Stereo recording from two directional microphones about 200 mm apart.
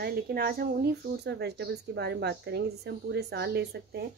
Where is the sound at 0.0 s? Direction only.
50° right (ahead or behind).